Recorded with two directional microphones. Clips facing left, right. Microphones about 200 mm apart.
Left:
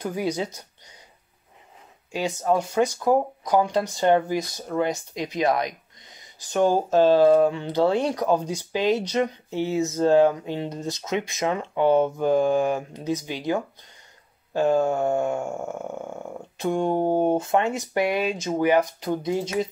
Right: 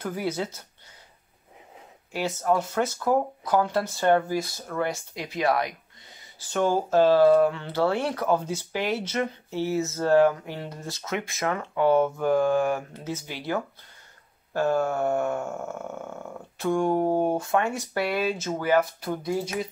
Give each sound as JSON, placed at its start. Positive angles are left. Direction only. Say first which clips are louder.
{"t": 0.0, "sound": "speech", "louder": "left 2 dB", "side_deg": 15}
{"t": 2.1, "sound": "speech", "louder": "left 2 dB", "side_deg": 15}